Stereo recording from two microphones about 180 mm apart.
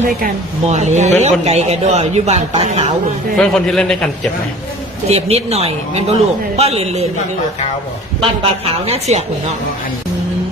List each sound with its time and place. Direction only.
0.2 s a woman's voice: 40° right (ahead or behind)
3.3 s a man's voice: 5° left (ahead or behind)
5.0 s a woman's voice: 35° right (ahead or behind)
8.2 s a woman's voice: 35° right (ahead or behind)